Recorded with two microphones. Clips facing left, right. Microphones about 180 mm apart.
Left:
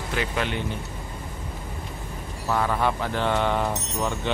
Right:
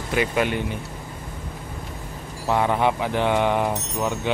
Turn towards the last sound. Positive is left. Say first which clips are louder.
# right 2 dB
turn(degrees=-10)  # may be behind; listen again after turning